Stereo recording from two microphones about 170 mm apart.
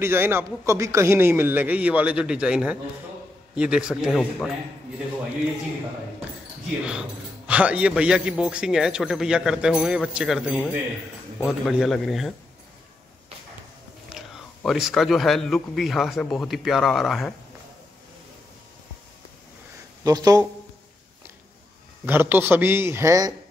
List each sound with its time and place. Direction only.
0.0 s a man's voice: 15° right (ahead or behind); by 4.5 s 5° left (ahead or behind)
6.9 s a man's voice: 5° right (ahead or behind)
14.0 s a man's voice: centre (ahead or behind)
20.0 s speech: 20° right (ahead or behind)
22.0 s speech: 10° right (ahead or behind)